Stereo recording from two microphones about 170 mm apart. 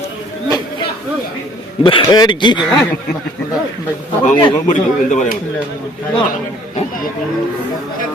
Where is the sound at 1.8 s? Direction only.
25° left (ahead or behind).